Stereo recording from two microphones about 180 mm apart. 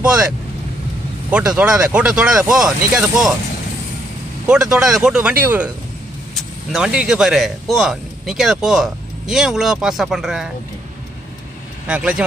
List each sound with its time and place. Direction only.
0.0 s speech: 5° right (ahead or behind)
1.3 s speech: 5° right (ahead or behind)
4.5 s speech: 5° right (ahead or behind)
6.7 s speech: 5° right (ahead or behind)
11.9 s speech: 5° right (ahead or behind)